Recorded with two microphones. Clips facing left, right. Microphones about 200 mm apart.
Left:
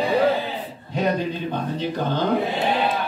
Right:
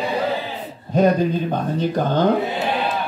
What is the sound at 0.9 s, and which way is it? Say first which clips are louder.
Speech: right 7 dB; 45° right (ahead or behind).